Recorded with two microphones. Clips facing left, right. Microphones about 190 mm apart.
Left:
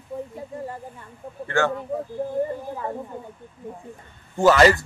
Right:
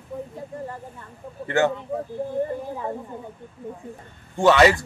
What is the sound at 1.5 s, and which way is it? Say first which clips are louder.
Speech: right 2 dB; 20° right (ahead or behind).